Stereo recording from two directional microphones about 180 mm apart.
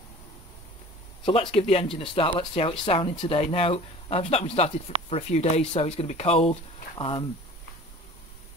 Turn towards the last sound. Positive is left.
turn(degrees=30)  # may be behind; listen again after turning